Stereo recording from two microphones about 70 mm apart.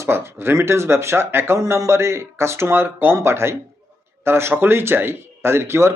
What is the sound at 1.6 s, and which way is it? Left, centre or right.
Speech, right.